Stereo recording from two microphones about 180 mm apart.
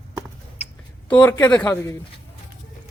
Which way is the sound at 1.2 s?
10° left (ahead or behind).